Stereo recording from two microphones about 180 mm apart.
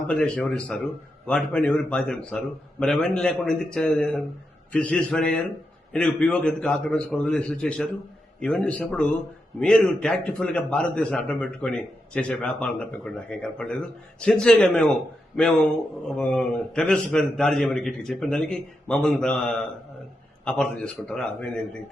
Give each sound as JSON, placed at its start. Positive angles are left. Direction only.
{"t": 0.1, "sound": "a man's voice", "side_deg": 5}